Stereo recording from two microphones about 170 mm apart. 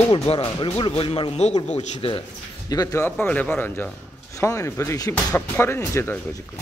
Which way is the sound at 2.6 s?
20° left (ahead or behind).